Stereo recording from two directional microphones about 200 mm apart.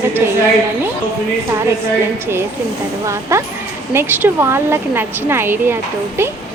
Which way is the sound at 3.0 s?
15° right (ahead or behind).